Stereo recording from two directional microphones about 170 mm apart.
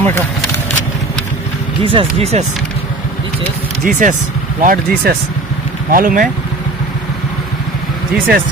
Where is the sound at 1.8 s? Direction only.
30° right (ahead or behind).